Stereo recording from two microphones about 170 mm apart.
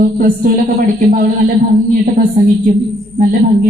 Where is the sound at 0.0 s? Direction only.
55° right (ahead or behind).